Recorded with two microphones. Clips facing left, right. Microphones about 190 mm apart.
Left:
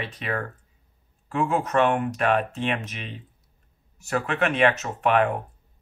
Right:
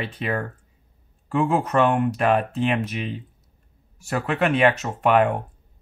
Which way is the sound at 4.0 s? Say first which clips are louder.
Right 2 dB; 30° right (ahead or behind).